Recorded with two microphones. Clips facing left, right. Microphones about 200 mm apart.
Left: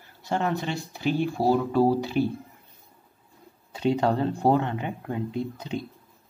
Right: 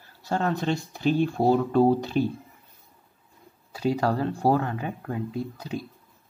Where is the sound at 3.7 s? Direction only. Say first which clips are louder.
Left 1 dB; 25° left (ahead or behind).